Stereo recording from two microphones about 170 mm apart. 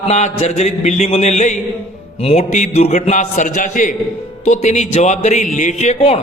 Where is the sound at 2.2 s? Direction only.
40° left (ahead or behind).